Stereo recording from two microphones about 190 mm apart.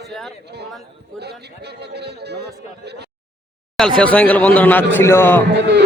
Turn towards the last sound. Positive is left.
turn(degrees=-65)  # may be behind; listen again after turning